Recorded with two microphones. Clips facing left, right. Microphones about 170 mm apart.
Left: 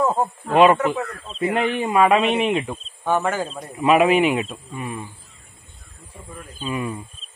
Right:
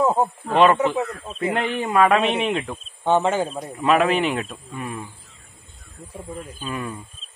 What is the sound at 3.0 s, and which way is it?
Speech, 25° right (ahead or behind).